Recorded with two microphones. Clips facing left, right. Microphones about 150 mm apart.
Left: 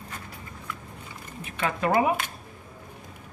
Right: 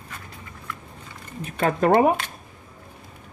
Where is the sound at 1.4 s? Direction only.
45° right (ahead or behind).